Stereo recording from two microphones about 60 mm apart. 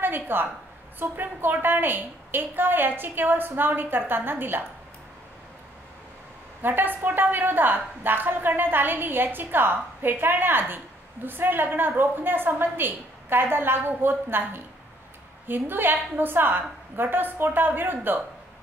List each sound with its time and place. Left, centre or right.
0.0 s a woman's voice: right
6.6 s a woman's voice: right